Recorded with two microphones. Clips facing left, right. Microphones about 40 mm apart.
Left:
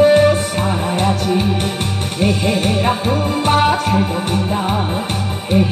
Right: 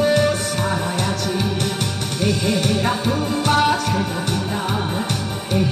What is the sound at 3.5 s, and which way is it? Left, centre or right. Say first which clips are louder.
Music: left 3 dB; left.